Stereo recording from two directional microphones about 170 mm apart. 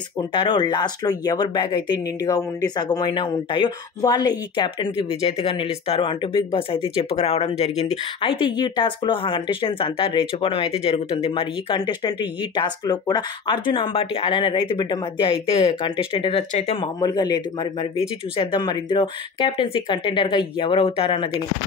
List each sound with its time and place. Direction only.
0.3 s speech: 30° left (ahead or behind)
17.0 s speech: 25° left (ahead or behind)